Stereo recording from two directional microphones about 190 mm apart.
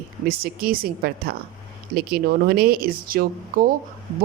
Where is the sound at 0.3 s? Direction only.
50° right (ahead or behind).